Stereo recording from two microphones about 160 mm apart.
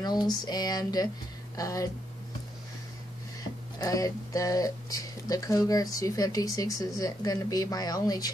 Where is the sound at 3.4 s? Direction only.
20° left (ahead or behind).